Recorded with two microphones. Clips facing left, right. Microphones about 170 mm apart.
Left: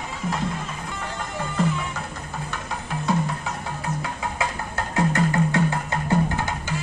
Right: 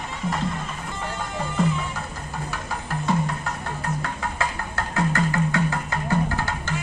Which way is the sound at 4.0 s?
15° left (ahead or behind).